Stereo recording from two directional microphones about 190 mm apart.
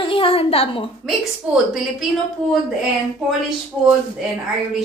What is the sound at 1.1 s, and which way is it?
A woman's voice, centre (ahead or behind).